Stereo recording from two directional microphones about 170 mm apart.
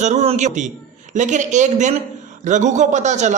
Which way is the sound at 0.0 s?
40° right (ahead or behind).